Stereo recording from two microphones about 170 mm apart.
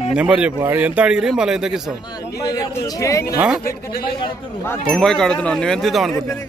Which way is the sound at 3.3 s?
5° right (ahead or behind).